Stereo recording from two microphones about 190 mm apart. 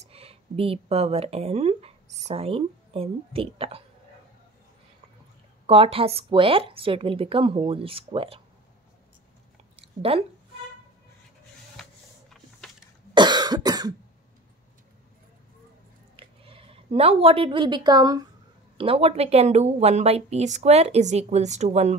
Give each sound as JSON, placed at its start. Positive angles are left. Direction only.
{"t": 0.0, "sound": "speech", "side_deg": -30}
{"t": 5.7, "sound": "a woman's voice", "side_deg": -30}
{"t": 9.8, "sound": "a sound", "side_deg": -30}
{"t": 11.7, "sound": "printer", "side_deg": 0}
{"t": 13.1, "sound": "cough", "side_deg": -25}
{"t": 16.2, "sound": "a woman's voice", "side_deg": -30}
{"t": 18.8, "sound": "speech", "side_deg": -30}